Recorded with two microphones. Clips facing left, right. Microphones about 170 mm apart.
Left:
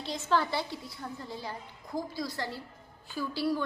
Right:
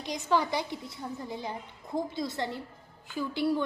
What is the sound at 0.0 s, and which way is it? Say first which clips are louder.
A woman's voice: right 1 dB; 15° right (ahead or behind).